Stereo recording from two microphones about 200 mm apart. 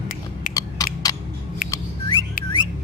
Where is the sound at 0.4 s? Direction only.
45° left (ahead or behind).